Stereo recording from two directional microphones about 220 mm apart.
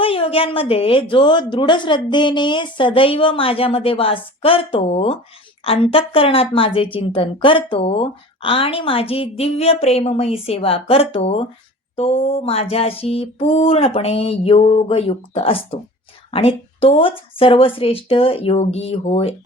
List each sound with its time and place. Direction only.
0.0 s a woman's voice: 25° left (ahead or behind)